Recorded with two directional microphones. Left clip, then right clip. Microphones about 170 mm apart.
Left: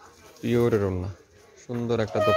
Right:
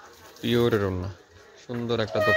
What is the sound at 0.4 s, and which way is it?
Speech, 10° left (ahead or behind).